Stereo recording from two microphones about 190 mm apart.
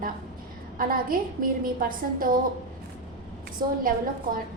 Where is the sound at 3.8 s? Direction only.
45° right (ahead or behind).